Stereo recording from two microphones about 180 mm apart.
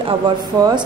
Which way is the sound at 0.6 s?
20° right (ahead or behind).